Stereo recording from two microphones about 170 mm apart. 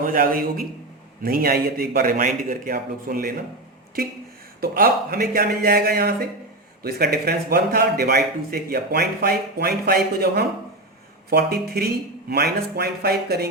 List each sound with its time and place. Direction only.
0.0 s a man's voice: 55° right (ahead or behind)
4.6 s a man's voice: 60° right (ahead or behind)